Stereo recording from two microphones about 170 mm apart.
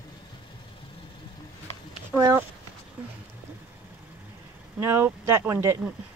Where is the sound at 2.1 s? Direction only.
15° right (ahead or behind).